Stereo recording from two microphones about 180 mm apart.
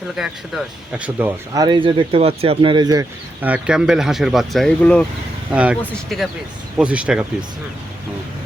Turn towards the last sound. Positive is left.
turn(degrees=-5)  # may be behind; listen again after turning